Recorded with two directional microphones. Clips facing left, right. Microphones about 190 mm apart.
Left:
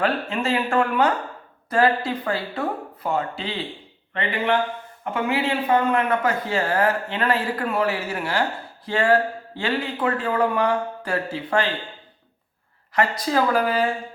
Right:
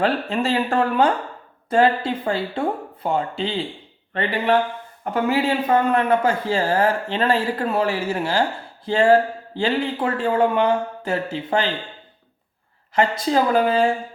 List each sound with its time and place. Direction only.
0.0 s speech: 35° right (ahead or behind)
5.9 s speech: 30° right (ahead or behind)
12.9 s speech: 25° right (ahead or behind)